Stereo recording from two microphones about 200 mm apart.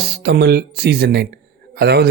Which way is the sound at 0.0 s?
55° right (ahead or behind).